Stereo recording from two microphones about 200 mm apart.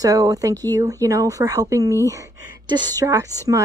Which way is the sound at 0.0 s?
15° right (ahead or behind).